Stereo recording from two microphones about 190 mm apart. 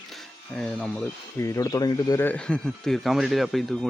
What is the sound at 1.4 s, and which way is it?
Speech, 15° left (ahead or behind).